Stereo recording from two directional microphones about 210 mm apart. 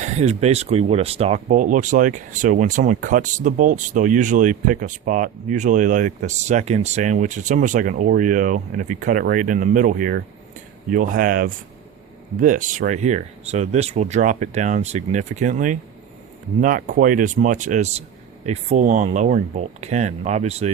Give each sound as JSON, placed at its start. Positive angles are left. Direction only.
{"t": 0.0, "sound": "speech", "side_deg": -30}